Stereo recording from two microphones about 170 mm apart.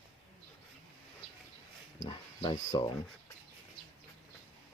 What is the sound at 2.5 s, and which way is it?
Speech, 45° left (ahead or behind).